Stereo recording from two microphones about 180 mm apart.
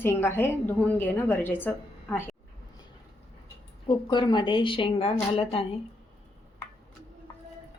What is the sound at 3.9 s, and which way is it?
A woman's voice, 25° left (ahead or behind).